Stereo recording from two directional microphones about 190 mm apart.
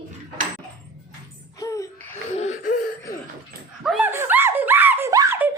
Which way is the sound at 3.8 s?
5° right (ahead or behind).